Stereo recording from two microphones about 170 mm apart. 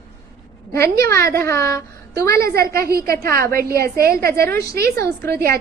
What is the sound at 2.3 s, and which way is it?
A woman's voice, 65° right (ahead or behind).